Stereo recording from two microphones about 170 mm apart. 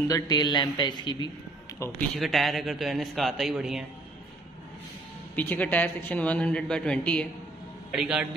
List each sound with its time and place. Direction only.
0.1 s a man's voice: 25° left (ahead or behind)
1.8 s speech: 15° left (ahead or behind)
2.1 s a man's voice: centre (ahead or behind)
5.3 s speech: 10° left (ahead or behind)
7.9 s a man's voice: 5° right (ahead or behind)